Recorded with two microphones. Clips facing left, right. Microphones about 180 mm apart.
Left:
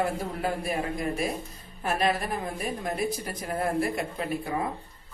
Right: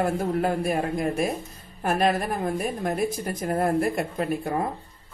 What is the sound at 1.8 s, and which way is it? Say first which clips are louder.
Speech: right 4 dB; 50° right (ahead or behind).